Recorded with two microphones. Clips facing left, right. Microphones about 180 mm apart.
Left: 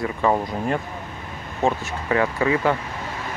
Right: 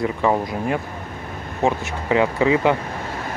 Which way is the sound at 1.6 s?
20° right (ahead or behind).